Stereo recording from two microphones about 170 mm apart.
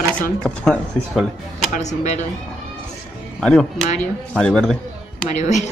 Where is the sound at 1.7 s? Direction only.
45° left (ahead or behind).